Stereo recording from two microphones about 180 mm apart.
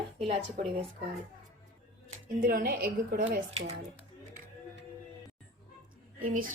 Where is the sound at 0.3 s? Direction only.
40° right (ahead or behind).